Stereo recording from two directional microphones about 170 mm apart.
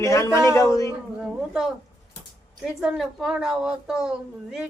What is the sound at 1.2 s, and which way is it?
A woman's voice, centre (ahead or behind).